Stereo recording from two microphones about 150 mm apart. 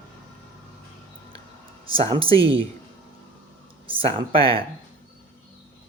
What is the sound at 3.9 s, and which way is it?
Speech, 40° right (ahead or behind).